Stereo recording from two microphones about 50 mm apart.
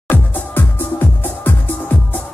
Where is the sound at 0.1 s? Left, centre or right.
Left.